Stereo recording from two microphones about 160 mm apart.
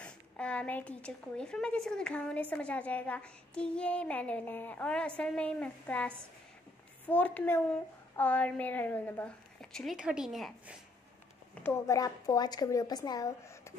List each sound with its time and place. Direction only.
0.0 s a woman's voice: 5° left (ahead or behind)
11.6 s a woman's voice: 20° left (ahead or behind)